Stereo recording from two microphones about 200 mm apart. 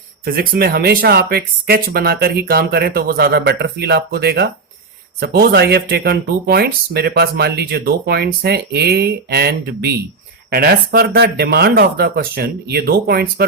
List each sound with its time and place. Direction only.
0.3 s speech: 50° right (ahead or behind)